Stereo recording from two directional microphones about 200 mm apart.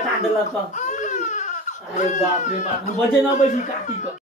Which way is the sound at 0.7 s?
35° left (ahead or behind).